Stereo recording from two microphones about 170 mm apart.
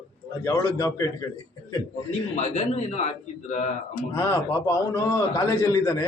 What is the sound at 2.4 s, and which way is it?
Speech, 40° left (ahead or behind).